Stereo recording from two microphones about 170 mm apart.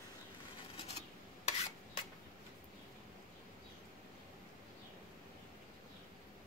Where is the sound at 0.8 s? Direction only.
40° left (ahead or behind).